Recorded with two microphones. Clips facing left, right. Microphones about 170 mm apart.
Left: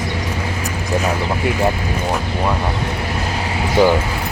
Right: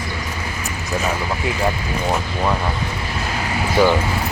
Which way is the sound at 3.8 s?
20° left (ahead or behind).